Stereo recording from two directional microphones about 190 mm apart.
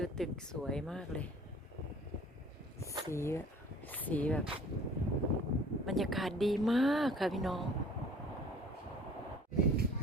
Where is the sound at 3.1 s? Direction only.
15° left (ahead or behind).